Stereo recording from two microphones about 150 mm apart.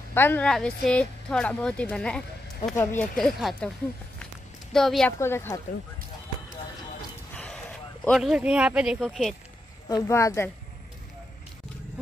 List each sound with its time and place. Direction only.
0.1 s a woman's voice: 15° left (ahead or behind)
2.7 s a woman's voice: 15° left (ahead or behind)
3.2 s speech: centre (ahead or behind)
4.7 s speech: centre (ahead or behind)
5.2 s a woman's voice: 15° left (ahead or behind)
7.3 s a sound: 10° left (ahead or behind)
8.2 s speech: 5° right (ahead or behind)
9.8 s speech: 20° left (ahead or behind)